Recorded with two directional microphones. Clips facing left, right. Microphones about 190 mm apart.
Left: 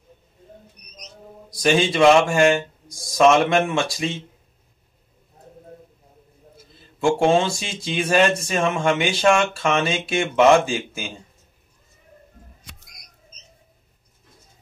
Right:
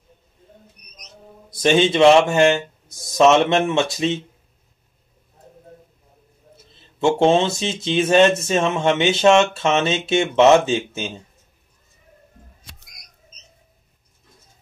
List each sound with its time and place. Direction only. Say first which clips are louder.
1.5 s speech: right 3 dB; 25° right (ahead or behind)
6.5 s speech: right 1 dB; 25° right (ahead or behind)